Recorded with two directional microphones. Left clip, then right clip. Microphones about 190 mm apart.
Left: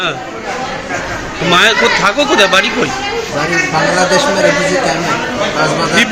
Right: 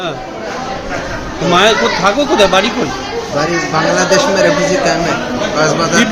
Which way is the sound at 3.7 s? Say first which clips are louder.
Right 1 dB; 25° right (ahead or behind).